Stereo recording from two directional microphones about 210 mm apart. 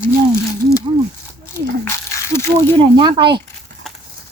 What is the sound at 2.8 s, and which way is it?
Speech, 20° right (ahead or behind).